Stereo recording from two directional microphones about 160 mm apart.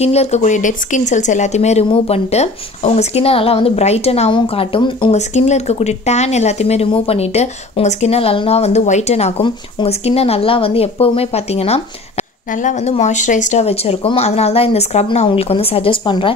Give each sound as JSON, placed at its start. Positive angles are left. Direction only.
{"t": 0.0, "sound": "speech", "side_deg": 40}
{"t": 5.1, "sound": "speech", "side_deg": 45}